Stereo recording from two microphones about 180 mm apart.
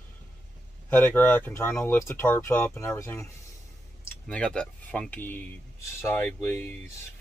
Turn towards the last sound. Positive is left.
turn(degrees=15)  # may be behind; listen again after turning